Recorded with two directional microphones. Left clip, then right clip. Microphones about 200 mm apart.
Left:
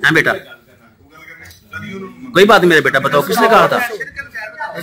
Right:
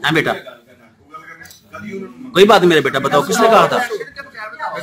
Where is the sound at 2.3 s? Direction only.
5° right (ahead or behind).